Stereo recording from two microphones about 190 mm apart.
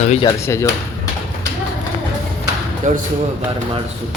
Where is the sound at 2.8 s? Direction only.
40° right (ahead or behind).